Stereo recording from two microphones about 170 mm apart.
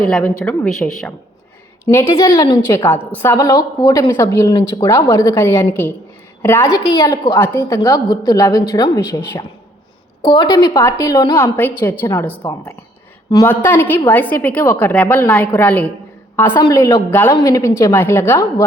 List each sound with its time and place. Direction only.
0.0 s a woman's voice: 5° left (ahead or behind)
1.9 s a woman's voice: 15° left (ahead or behind)
13.3 s a woman's voice: 15° left (ahead or behind)